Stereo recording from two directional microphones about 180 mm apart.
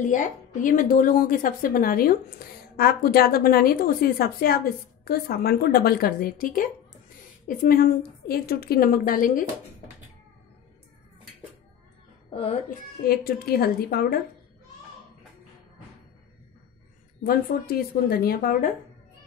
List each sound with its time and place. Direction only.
0.0 s a woman's voice: 45° left (ahead or behind)
12.3 s music: 35° left (ahead or behind)
13.0 s a woman's voice: 55° left (ahead or behind)
17.2 s a woman's voice: 55° left (ahead or behind)